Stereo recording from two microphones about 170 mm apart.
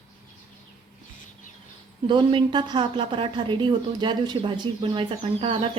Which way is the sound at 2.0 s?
30° right (ahead or behind).